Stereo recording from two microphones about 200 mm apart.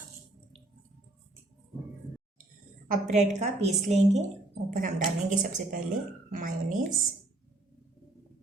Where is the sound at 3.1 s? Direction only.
35° right (ahead or behind).